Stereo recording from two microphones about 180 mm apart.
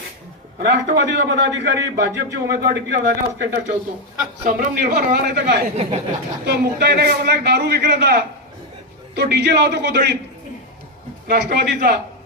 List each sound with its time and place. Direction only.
0.6 s a man's voice: 75° right (ahead or behind)
4.4 s a man's voice: 50° right (ahead or behind)
5.7 s speech: 40° right (ahead or behind)
6.4 s a man's voice: 65° right (ahead or behind)
11.3 s a man's voice: 60° right (ahead or behind)